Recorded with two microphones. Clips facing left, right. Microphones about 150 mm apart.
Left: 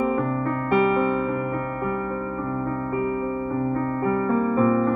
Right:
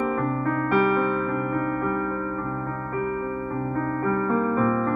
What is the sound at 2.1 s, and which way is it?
Music, 15° left (ahead or behind).